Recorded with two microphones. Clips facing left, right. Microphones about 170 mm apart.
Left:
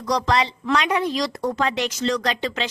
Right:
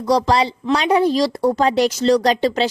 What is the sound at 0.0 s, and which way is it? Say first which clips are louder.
A woman's voice: right 5 dB; 30° right (ahead or behind).